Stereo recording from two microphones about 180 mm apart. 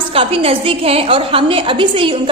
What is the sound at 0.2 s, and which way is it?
A woman's voice, 35° right (ahead or behind).